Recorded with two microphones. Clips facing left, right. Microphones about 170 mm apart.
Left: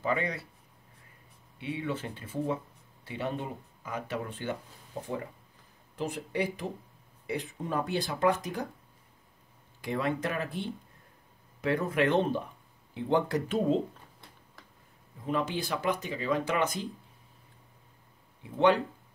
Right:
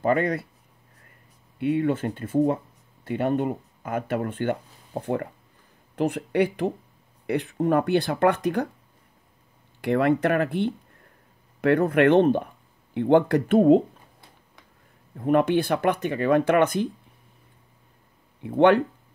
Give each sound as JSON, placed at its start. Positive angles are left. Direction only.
{"t": 0.0, "sound": "speech", "side_deg": -50}
{"t": 1.6, "sound": "speech", "side_deg": -55}
{"t": 9.8, "sound": "speech", "side_deg": -65}
{"t": 15.1, "sound": "speech", "side_deg": -60}
{"t": 18.4, "sound": "speech", "side_deg": -60}